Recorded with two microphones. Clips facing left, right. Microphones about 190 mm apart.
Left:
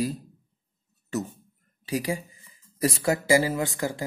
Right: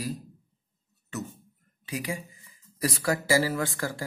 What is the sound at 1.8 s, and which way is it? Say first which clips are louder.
Speech: left 5 dB; 35° left (ahead or behind).